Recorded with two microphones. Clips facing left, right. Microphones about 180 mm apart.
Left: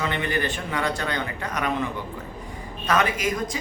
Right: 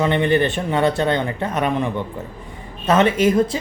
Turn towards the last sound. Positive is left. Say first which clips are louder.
# right 10 dB
turn(degrees=-30)  # may be behind; listen again after turning